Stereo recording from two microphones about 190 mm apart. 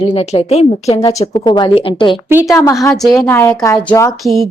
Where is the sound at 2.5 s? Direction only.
15° left (ahead or behind).